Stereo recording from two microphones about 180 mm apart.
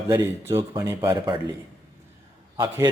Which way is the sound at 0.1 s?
15° right (ahead or behind).